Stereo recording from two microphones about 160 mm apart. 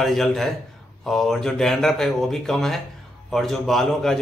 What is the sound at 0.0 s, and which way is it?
A man's voice, centre (ahead or behind).